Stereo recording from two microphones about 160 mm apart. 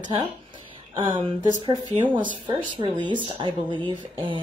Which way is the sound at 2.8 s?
30° right (ahead or behind).